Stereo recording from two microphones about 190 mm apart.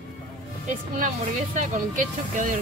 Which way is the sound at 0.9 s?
45° right (ahead or behind).